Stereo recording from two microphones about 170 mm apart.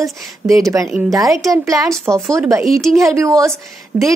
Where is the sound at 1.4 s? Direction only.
20° right (ahead or behind).